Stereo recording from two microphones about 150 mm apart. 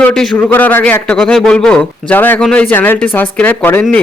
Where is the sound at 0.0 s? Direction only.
5° left (ahead or behind).